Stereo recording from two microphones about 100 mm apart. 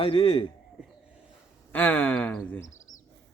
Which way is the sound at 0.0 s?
55° left (ahead or behind).